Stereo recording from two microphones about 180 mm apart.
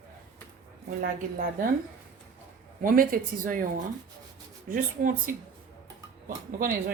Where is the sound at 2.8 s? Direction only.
50° right (ahead or behind).